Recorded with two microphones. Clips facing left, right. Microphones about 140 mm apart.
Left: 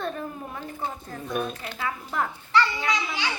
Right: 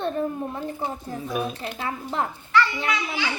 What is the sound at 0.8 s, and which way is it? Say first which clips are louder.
Speech: right 3 dB; 15° right (ahead or behind).